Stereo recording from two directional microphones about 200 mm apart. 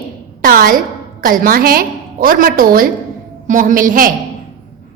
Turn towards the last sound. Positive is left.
turn(degrees=-45)  # may be behind; listen again after turning